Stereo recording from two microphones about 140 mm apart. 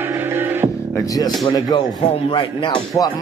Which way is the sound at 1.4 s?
35° left (ahead or behind).